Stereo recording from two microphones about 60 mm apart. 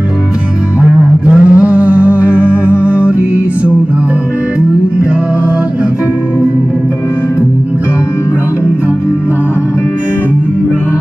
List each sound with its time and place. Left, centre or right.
1.2 s humming: centre